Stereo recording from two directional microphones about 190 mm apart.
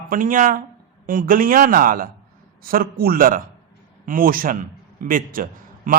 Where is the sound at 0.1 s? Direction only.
45° right (ahead or behind).